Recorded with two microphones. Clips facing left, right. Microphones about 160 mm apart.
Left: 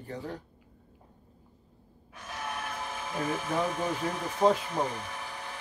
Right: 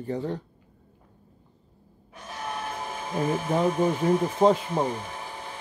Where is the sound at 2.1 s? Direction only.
30° right (ahead or behind).